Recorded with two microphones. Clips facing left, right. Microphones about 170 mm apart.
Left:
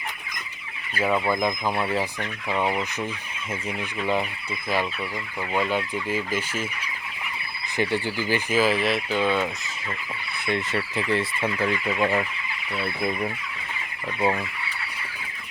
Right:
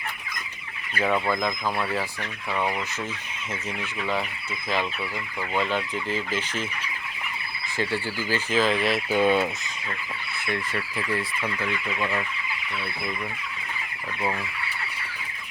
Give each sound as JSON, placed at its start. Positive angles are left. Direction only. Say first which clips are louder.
{"t": 0.9, "sound": "speech", "louder": "left 1 dB", "side_deg": 10}
{"t": 5.5, "sound": "speech", "louder": "left 1 dB", "side_deg": 10}
{"t": 7.8, "sound": "speech", "louder": "left 3 dB", "side_deg": 20}
{"t": 9.0, "sound": "fowl", "louder": "right 2 dB", "side_deg": -15}
{"t": 10.4, "sound": "speech", "louder": "left 4 dB", "side_deg": 25}